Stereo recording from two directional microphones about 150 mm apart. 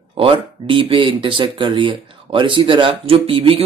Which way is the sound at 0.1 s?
35° right (ahead or behind).